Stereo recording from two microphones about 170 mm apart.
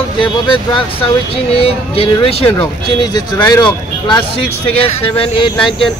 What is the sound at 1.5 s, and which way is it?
Speech, 35° left (ahead or behind).